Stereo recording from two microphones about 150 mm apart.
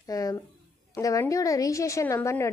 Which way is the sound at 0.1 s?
25° left (ahead or behind).